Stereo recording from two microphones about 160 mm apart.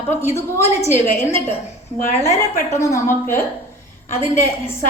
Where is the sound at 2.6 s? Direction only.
15° left (ahead or behind).